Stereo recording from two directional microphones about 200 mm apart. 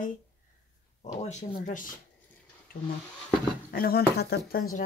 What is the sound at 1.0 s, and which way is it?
Speech, 35° left (ahead or behind).